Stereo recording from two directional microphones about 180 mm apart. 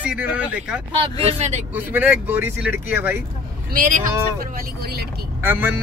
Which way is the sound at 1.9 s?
10° right (ahead or behind).